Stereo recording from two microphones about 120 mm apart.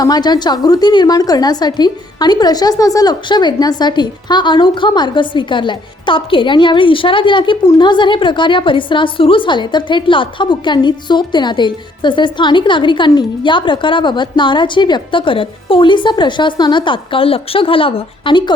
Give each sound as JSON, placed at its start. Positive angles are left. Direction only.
{"t": 0.0, "sound": "a woman's voice", "side_deg": 35}